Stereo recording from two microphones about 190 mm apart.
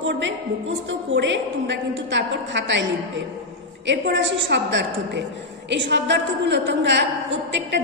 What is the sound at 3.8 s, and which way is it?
A woman's voice, 65° right (ahead or behind).